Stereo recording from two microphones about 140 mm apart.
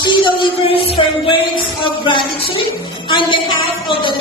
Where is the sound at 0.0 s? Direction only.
35° left (ahead or behind).